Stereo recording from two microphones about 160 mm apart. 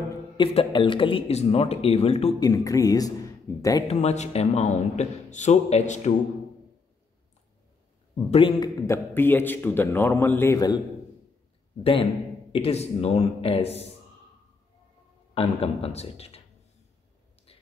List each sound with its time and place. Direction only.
0.4 s speech: 30° left (ahead or behind)
2.4 s speech: 20° left (ahead or behind)
3.8 s a man's voice: 45° left (ahead or behind)
8.3 s a man's voice: 35° left (ahead or behind)
11.8 s speech: 35° left (ahead or behind)
15.3 s speech: 40° left (ahead or behind)
17.5 s whispering: 35° left (ahead or behind)